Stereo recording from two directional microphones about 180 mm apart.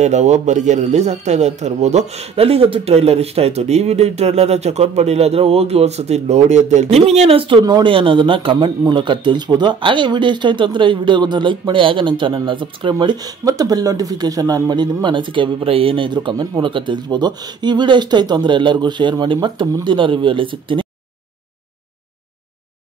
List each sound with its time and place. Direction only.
0.0 s a man's voice: 40° right (ahead or behind)